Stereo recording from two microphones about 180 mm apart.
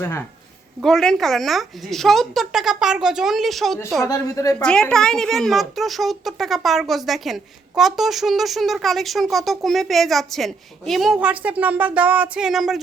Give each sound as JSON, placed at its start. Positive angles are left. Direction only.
{"t": 0.0, "sound": "speech", "side_deg": 15}
{"t": 0.8, "sound": "speech", "side_deg": 0}
{"t": 4.0, "sound": "a woman's voice", "side_deg": 20}
{"t": 4.6, "sound": "speech", "side_deg": 5}